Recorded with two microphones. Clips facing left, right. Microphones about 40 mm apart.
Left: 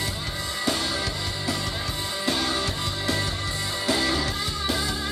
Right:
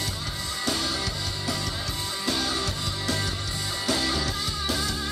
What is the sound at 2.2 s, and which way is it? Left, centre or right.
Music, centre.